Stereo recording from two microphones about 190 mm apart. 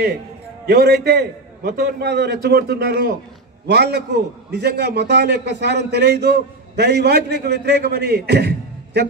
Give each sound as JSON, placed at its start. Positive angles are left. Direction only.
{"t": 0.7, "sound": "a man's voice", "side_deg": -55}